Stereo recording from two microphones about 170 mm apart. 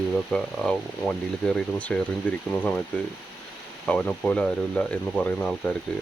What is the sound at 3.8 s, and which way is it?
Speech, 10° left (ahead or behind).